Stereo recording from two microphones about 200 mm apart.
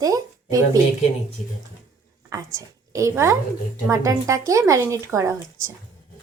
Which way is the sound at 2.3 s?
15° right (ahead or behind).